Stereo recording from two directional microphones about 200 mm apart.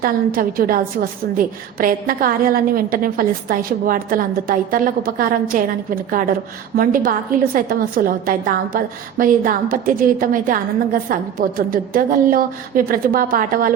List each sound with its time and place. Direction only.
0.0 s a woman's voice: 45° right (ahead or behind)